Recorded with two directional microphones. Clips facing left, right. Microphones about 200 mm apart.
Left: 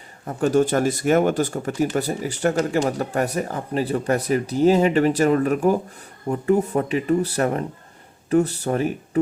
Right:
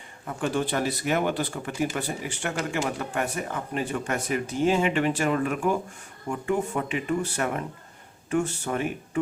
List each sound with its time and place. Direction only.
0.3 s speech: 40° left (ahead or behind)